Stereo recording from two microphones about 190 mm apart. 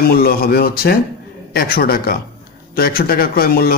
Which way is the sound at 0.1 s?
55° left (ahead or behind).